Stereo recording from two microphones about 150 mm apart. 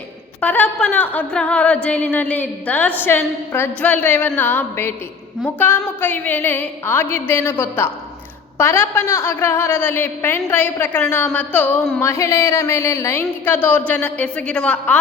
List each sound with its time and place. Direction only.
0.4 s a woman's voice: 10° left (ahead or behind)